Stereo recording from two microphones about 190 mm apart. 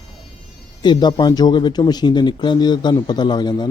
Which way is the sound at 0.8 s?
25° left (ahead or behind).